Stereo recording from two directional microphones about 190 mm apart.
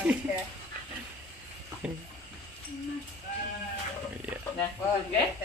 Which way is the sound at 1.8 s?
5° right (ahead or behind).